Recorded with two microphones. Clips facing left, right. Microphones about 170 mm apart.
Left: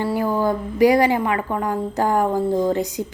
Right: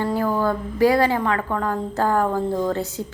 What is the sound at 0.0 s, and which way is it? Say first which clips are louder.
A woman's voice: left 1 dB; 15° left (ahead or behind).